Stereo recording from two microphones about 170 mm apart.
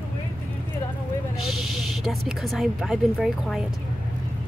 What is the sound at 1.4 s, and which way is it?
Speech, centre (ahead or behind).